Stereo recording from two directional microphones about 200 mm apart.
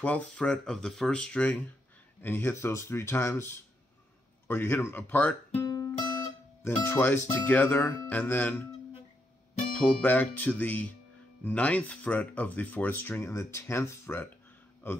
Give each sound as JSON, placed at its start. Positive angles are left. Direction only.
{"t": 0.0, "sound": "speech", "side_deg": 5}
{"t": 5.5, "sound": "music", "side_deg": 15}
{"t": 6.6, "sound": "speech", "side_deg": 10}
{"t": 10.0, "sound": "speech", "side_deg": 10}